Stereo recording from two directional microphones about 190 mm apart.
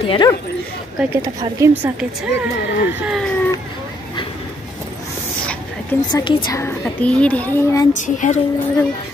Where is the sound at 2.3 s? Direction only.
60° left (ahead or behind).